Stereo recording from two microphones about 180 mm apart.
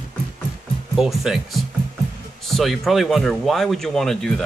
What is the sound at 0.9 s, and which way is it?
Speech, 5° right (ahead or behind).